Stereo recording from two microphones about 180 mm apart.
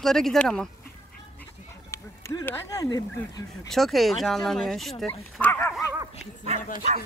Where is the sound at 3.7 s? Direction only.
Centre (ahead or behind).